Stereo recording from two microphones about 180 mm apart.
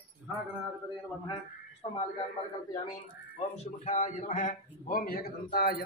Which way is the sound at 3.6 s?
40° left (ahead or behind).